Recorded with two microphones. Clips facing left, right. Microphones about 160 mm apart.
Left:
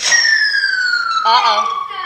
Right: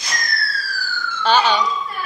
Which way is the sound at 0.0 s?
90° left.